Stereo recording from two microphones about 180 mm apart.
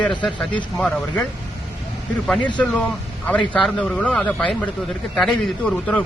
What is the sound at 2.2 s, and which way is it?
Speech, centre (ahead or behind).